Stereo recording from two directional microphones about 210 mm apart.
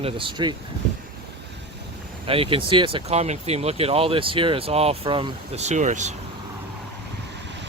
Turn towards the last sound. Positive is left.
turn(degrees=-55)  # may be behind; listen again after turning